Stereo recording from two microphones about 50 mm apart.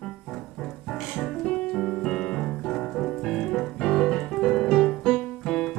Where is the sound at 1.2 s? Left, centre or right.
Left.